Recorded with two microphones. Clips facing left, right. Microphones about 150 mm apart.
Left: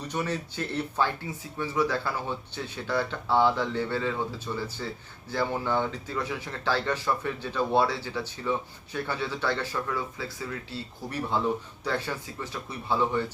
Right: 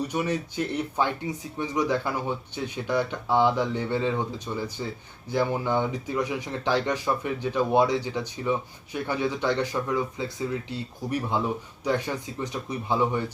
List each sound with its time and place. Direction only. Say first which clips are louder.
0.1 s speech: right 3 dB; 15° right (ahead or behind)